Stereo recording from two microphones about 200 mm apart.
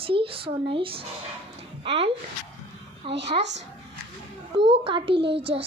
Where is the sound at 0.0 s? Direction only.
25° right (ahead or behind).